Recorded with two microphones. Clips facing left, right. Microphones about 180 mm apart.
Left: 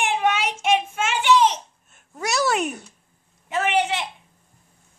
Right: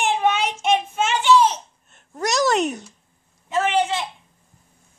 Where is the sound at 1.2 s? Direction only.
15° left (ahead or behind).